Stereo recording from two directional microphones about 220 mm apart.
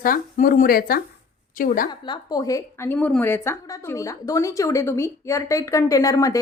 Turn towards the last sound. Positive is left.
turn(degrees=15)  # may be behind; listen again after turning